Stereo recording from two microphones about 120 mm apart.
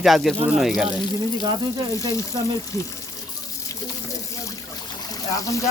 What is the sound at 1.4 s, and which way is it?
Speech, 35° right (ahead or behind).